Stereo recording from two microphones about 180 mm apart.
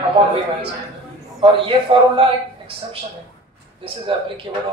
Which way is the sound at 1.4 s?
30° right (ahead or behind).